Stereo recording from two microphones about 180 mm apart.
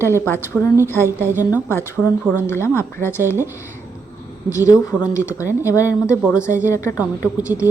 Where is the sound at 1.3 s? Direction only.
10° right (ahead or behind).